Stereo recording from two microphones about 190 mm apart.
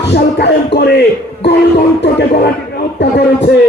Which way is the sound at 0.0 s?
60° left (ahead or behind).